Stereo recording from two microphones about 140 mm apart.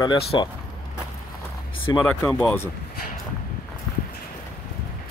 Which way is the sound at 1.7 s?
40° left (ahead or behind).